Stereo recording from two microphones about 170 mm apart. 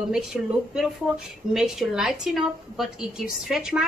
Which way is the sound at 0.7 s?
Centre (ahead or behind).